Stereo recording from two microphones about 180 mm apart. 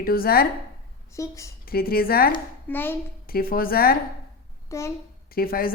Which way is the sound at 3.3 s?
55° left (ahead or behind).